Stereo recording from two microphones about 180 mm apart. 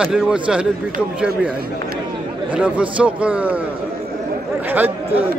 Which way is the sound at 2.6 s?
5° right (ahead or behind).